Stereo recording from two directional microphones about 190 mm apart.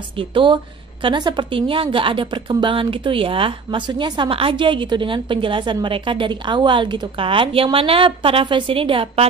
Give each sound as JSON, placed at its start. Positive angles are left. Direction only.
{"t": 0.2, "sound": "a woman's voice", "side_deg": -25}